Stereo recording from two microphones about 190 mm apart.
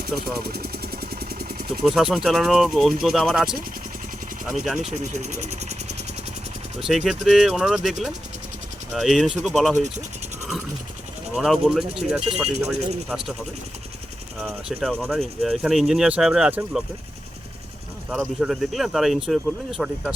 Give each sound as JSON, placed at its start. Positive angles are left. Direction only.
{"t": 0.2, "sound": "vehicle", "side_deg": -55}
{"t": 1.8, "sound": "speech", "side_deg": 0}
{"t": 4.8, "sound": "speech", "side_deg": -35}
{"t": 6.7, "sound": "speech", "side_deg": 0}
{"t": 9.0, "sound": "speech", "side_deg": 0}
{"t": 11.3, "sound": "speech", "side_deg": 0}
{"t": 14.4, "sound": "speech", "side_deg": 5}
{"t": 18.1, "sound": "speech", "side_deg": -5}